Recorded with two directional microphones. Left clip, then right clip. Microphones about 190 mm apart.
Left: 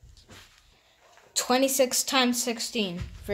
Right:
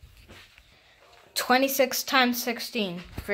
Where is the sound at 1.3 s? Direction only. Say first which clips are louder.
Right 1 dB; centre (ahead or behind).